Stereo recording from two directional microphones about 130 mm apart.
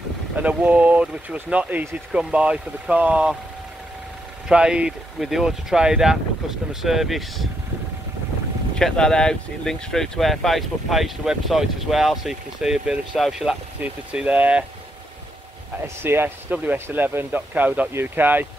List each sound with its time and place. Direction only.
0.4 s speech: 10° right (ahead or behind)
4.5 s speech: 5° right (ahead or behind)
8.7 s speech: 5° left (ahead or behind); by 14.6 s 10° right (ahead or behind)
16.0 s speech: 15° right (ahead or behind)